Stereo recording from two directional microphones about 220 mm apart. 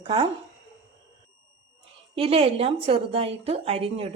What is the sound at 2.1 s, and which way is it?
A woman's voice, 25° right (ahead or behind).